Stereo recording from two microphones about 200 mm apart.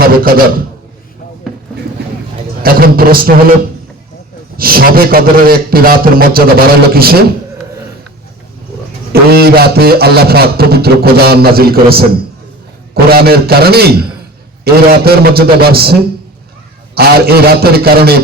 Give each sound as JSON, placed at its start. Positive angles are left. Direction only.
{"t": 0.0, "sound": "a man's voice", "side_deg": -45}
{"t": 2.6, "sound": "a man's voice", "side_deg": -50}
{"t": 4.5, "sound": "a man's voice", "side_deg": -45}
{"t": 9.3, "sound": "a man's voice", "side_deg": -50}